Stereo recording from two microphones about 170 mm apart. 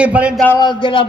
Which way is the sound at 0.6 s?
25° left (ahead or behind).